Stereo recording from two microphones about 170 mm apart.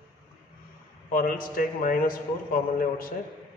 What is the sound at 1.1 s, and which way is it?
A man's voice, 55° left (ahead or behind).